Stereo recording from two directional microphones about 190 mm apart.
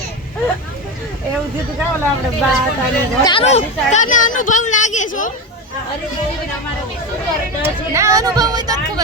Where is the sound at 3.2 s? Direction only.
30° left (ahead or behind).